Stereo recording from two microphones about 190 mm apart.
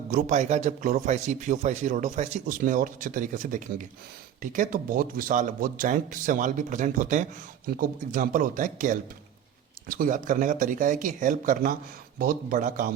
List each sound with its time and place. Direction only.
0.1 s a man's voice: 40° right (ahead or behind)